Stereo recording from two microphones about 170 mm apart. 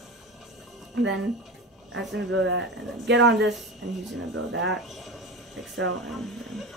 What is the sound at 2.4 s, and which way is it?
Speech, 90° right.